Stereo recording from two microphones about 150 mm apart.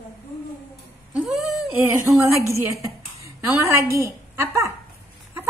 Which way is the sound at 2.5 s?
20° right (ahead or behind).